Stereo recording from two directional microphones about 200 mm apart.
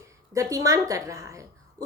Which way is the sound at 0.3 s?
15° right (ahead or behind).